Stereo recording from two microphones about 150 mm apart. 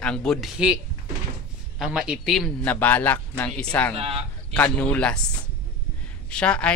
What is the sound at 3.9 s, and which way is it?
Speech, 40° right (ahead or behind).